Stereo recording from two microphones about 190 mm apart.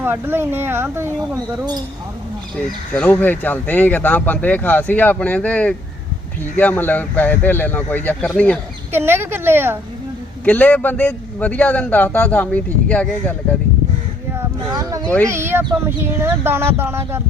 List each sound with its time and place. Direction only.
0.0 s speech: 10° right (ahead or behind)
2.9 s a man's voice: 5° left (ahead or behind)
8.9 s speech: 10° right (ahead or behind)
10.4 s a man's voice: 10° left (ahead or behind)
14.7 s speech: 15° right (ahead or behind)